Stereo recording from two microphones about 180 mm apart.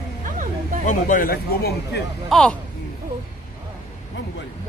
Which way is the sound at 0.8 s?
45° left (ahead or behind).